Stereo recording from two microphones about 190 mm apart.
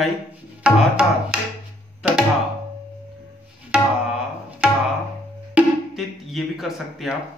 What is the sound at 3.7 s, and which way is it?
Tabla, 5° right (ahead or behind).